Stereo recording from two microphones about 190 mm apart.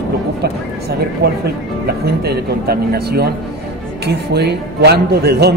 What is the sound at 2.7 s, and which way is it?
A man's voice, 55° right (ahead or behind).